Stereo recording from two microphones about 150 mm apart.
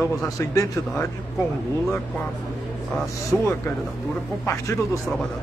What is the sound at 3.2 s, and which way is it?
A man's voice, 15° left (ahead or behind).